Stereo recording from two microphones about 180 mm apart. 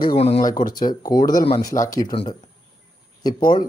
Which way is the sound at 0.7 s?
25° left (ahead or behind).